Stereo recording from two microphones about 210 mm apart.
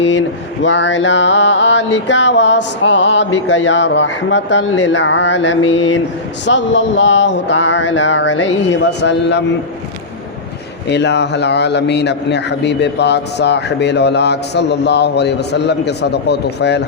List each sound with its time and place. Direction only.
0.6 s a man's voice: 60° left (ahead or behind)
10.8 s a man's voice: 55° left (ahead or behind)